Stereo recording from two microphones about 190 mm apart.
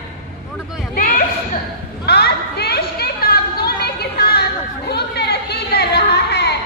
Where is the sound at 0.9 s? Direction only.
50° left (ahead or behind).